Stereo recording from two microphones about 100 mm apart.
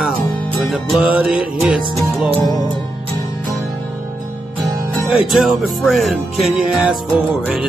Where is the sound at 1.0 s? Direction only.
10° right (ahead or behind).